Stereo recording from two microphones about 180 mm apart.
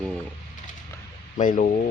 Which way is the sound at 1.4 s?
45° left (ahead or behind).